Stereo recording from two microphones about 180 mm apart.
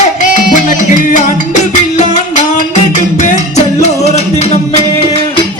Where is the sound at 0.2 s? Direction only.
45° left (ahead or behind).